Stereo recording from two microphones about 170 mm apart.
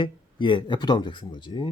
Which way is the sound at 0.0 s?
30° left (ahead or behind).